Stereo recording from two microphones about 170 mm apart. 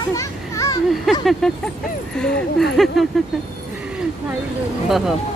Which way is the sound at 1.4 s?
5° left (ahead or behind).